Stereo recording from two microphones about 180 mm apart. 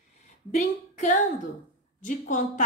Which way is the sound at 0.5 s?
45° left (ahead or behind).